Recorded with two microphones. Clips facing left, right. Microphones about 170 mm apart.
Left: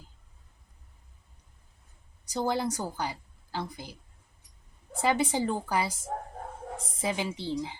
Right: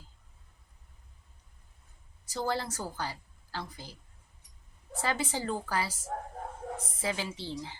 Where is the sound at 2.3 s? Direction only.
15° left (ahead or behind).